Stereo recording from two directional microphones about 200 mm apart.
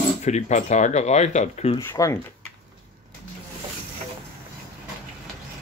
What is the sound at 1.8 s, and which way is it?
Speech, 15° left (ahead or behind).